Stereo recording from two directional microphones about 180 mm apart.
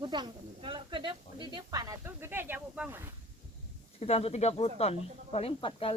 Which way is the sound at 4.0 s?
35° left (ahead or behind).